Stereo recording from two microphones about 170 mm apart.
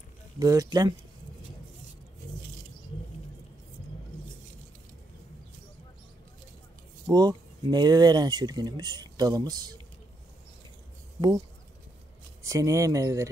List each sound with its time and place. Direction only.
0.4 s speech: 20° right (ahead or behind)
7.1 s speech: 25° right (ahead or behind)
12.4 s speech: 20° right (ahead or behind)